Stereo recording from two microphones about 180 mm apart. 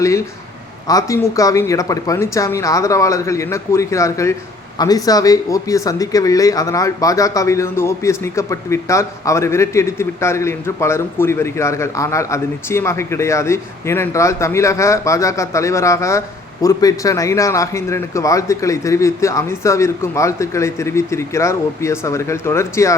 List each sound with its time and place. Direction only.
0.0 s speech: 15° left (ahead or behind)